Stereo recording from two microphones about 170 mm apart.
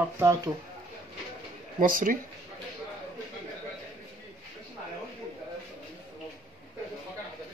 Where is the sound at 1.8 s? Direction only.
55° right (ahead or behind).